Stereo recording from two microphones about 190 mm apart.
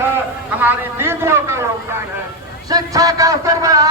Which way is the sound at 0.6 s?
10° right (ahead or behind).